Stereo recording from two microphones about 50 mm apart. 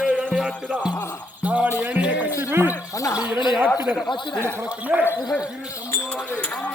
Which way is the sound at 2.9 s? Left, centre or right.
Left.